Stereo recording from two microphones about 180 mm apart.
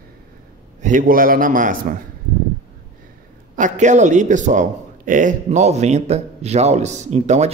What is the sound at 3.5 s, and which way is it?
Speech, 45° right (ahead or behind).